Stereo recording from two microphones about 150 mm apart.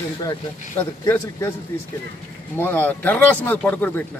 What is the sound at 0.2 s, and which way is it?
Speech, 25° left (ahead or behind).